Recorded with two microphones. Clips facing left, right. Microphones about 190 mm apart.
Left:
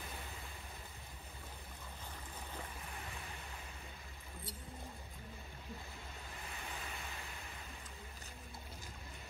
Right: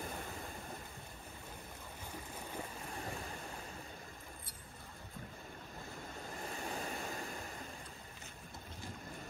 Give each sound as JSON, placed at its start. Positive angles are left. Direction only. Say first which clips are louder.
{"t": 6.4, "sound": "vehicle", "louder": "right 7 dB", "side_deg": -35}
{"t": 7.2, "sound": "vehicle", "louder": "right 7 dB", "side_deg": -50}